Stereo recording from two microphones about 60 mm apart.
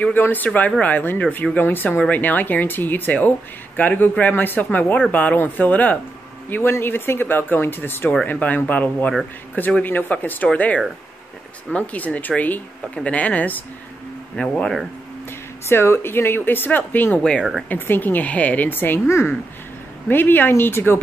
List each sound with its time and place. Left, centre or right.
0.0 s a woman's voice: left
6.5 s a woman's voice: left
14.3 s speech: centre
15.7 s speech: left
17.2 s speech: centre
17.6 s speech: left
19.0 s a woman's voice: left
20.1 s speech: left